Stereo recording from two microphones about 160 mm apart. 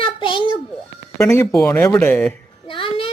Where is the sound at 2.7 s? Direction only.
35° left (ahead or behind).